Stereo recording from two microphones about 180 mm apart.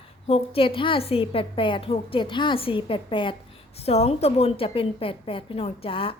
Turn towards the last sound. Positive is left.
turn(degrees=30)  # may be behind; listen again after turning